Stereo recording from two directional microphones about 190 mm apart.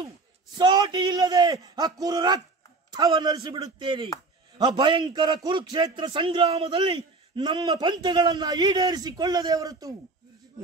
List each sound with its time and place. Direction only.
0.6 s a man's voice: 25° right (ahead or behind)